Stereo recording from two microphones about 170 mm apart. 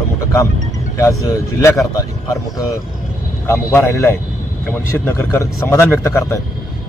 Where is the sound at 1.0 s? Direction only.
20° left (ahead or behind).